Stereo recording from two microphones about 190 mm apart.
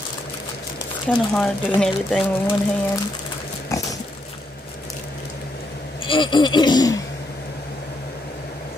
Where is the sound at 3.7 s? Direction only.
15° left (ahead or behind).